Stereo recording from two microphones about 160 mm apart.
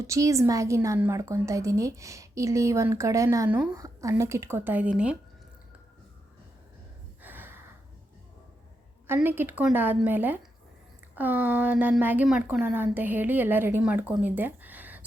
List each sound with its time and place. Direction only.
0.0 s a woman's voice: 20° right (ahead or behind)
7.2 s gasp: 10° right (ahead or behind)
9.0 s a woman's voice: 15° right (ahead or behind)